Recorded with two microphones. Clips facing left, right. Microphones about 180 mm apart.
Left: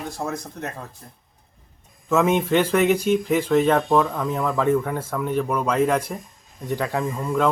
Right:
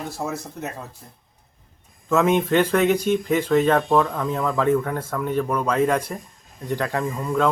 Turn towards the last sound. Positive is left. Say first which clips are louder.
# even
turn(degrees=5)  # may be behind; listen again after turning